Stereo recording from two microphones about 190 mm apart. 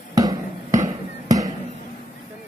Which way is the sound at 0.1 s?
20° right (ahead or behind).